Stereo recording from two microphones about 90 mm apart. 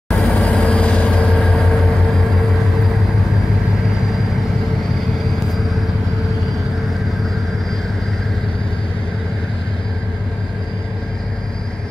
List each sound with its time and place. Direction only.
0.1 s train: 5° left (ahead or behind)